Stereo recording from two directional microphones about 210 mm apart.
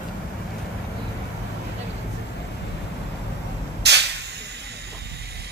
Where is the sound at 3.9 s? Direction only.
55° right (ahead or behind).